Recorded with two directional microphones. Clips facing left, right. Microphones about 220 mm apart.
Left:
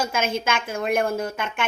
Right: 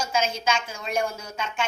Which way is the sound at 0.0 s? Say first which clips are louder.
Left 2 dB; 55° left (ahead or behind).